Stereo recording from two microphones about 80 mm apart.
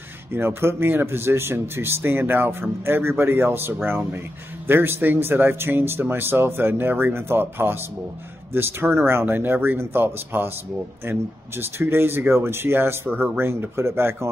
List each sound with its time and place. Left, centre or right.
0.3 s speech: right